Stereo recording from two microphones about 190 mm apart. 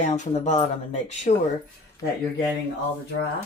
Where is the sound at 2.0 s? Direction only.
15° left (ahead or behind).